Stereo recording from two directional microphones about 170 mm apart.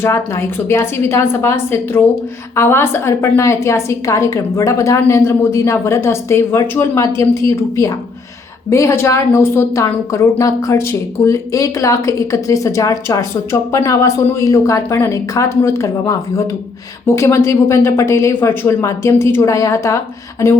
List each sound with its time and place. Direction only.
0.0 s a woman's voice: 15° left (ahead or behind)